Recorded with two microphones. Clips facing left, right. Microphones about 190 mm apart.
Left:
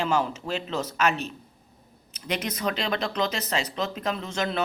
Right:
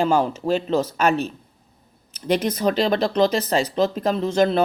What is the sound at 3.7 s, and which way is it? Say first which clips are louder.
Speech: right 8 dB; 35° right (ahead or behind).